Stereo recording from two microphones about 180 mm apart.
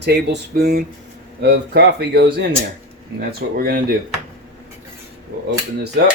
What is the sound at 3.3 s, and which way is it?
Speech, 60° right (ahead or behind).